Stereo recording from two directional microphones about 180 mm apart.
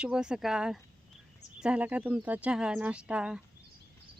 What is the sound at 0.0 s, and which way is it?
Speech, 5° right (ahead or behind).